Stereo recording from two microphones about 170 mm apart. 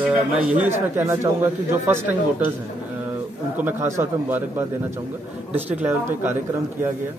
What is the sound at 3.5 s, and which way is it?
Speech, 10° right (ahead or behind).